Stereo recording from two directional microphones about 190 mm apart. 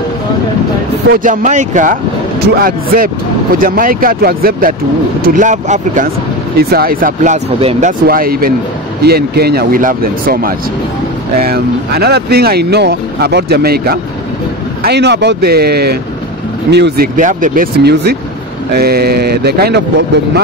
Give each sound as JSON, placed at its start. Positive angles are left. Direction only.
{"t": 1.1, "sound": "speech", "side_deg": -45}
{"t": 7.4, "sound": "speech", "side_deg": -30}
{"t": 8.1, "sound": "speech", "side_deg": -50}